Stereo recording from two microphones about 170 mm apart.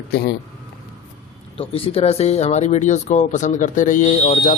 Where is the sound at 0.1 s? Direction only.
75° left (ahead or behind).